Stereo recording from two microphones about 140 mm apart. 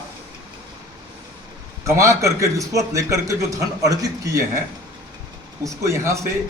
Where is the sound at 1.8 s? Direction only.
20° right (ahead or behind).